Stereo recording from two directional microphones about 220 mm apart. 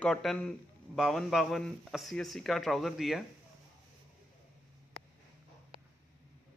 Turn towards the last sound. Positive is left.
turn(degrees=-25)  # may be behind; listen again after turning